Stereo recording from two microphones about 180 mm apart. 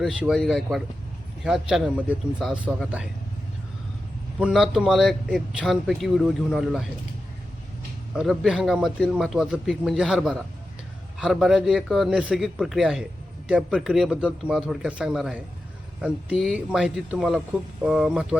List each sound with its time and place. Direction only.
0.0 s a man's voice: 5° right (ahead or behind)
4.4 s a man's voice: 5° right (ahead or behind)
8.1 s a man's voice: centre (ahead or behind)